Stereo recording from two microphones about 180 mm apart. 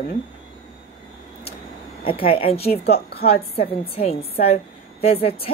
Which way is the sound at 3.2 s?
35° left (ahead or behind).